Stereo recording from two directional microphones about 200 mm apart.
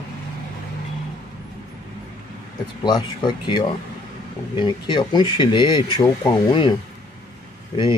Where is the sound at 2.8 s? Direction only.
20° left (ahead or behind).